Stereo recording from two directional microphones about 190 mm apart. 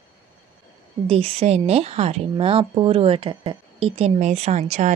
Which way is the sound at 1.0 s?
30° right (ahead or behind).